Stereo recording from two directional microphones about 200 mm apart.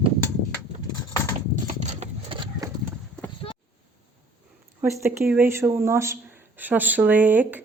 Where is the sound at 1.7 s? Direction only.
35° right (ahead or behind).